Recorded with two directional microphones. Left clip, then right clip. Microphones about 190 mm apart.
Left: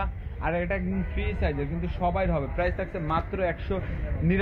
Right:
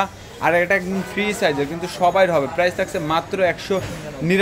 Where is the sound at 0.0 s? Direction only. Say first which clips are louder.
Right 12 dB; 20° right (ahead or behind).